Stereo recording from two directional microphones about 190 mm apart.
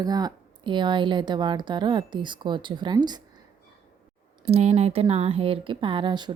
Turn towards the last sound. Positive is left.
turn(degrees=-25)  # may be behind; listen again after turning